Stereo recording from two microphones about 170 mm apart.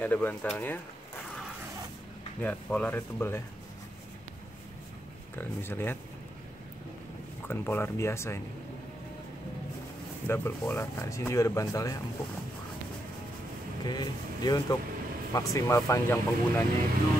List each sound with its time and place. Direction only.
0.0 s speech: 10° left (ahead or behind)
2.4 s speech: 10° left (ahead or behind)
5.4 s speech: 15° left (ahead or behind)
7.4 s speech: 15° left (ahead or behind)
10.2 s speech: 15° left (ahead or behind)
13.8 s speech: 25° left (ahead or behind)